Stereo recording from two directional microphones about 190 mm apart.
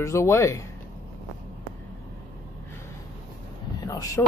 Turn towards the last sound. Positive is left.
turn(degrees=20)  # may be behind; listen again after turning